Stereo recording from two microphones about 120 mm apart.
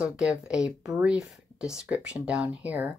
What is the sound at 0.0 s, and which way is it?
Speech, 5° right (ahead or behind).